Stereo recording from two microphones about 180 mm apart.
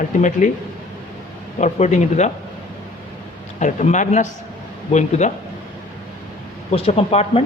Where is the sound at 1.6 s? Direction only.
40° left (ahead or behind).